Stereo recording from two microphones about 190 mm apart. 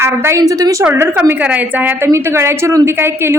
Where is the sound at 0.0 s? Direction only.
15° right (ahead or behind).